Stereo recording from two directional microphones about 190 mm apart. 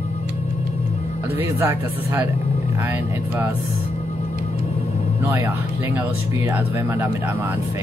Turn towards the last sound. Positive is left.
turn(degrees=-15)  # may be behind; listen again after turning